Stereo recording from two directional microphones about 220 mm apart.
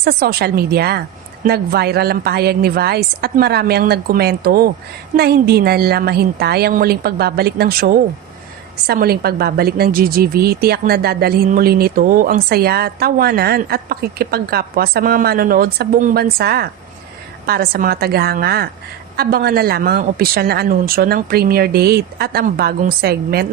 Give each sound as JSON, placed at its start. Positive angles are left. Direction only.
{"t": 0.0, "sound": "a woman's voice", "side_deg": -45}